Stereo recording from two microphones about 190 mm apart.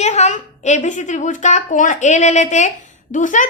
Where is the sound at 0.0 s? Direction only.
40° left (ahead or behind).